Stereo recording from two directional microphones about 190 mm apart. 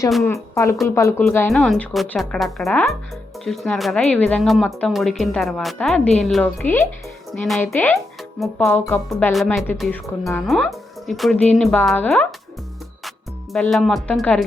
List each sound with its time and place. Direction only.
0.2 s speech: 15° left (ahead or behind)
1.5 s speech: centre (ahead or behind)
7.6 s speech: 10° left (ahead or behind)